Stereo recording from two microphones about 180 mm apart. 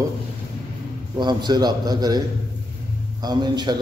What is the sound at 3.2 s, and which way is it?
Speech, 25° right (ahead or behind).